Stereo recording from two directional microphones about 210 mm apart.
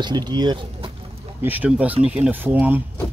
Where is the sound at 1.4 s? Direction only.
10° right (ahead or behind).